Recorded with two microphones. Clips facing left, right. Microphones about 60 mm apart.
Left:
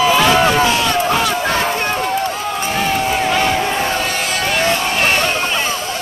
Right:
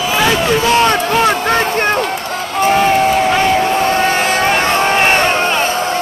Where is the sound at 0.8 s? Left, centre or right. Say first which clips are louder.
Right 4 dB; right.